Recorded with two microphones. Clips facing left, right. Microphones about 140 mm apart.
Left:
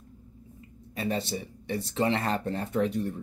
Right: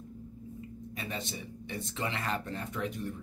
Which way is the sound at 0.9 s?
35° left (ahead or behind).